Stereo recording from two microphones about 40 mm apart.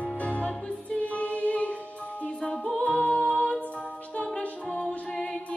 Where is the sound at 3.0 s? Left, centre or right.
Left.